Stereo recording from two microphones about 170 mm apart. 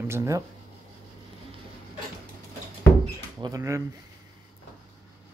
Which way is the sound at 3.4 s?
20° right (ahead or behind).